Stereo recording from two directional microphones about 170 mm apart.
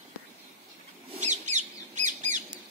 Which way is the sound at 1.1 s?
45° right (ahead or behind).